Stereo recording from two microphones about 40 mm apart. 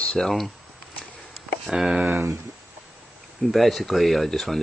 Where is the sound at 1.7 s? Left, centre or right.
Centre.